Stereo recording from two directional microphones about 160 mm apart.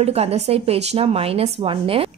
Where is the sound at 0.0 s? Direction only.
40° right (ahead or behind).